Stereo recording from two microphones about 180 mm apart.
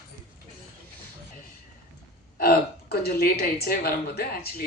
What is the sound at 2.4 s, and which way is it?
Speech, 55° left (ahead or behind).